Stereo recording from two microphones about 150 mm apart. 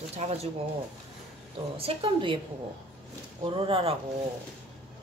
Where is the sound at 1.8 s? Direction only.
40° right (ahead or behind).